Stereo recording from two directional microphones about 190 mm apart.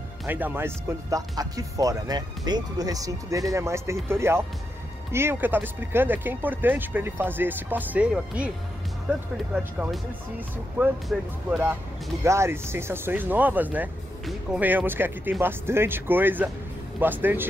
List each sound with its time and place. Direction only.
0.2 s speech: 10° right (ahead or behind)
9.5 s speech: 5° right (ahead or behind)